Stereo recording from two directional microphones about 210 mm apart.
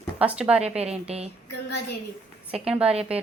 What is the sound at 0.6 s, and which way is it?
Speech, 30° right (ahead or behind).